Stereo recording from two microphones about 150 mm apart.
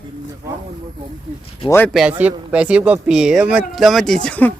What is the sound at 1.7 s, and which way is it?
Speech, 15° left (ahead or behind).